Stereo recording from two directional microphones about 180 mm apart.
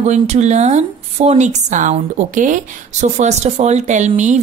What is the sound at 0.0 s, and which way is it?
A woman's voice, 40° right (ahead or behind).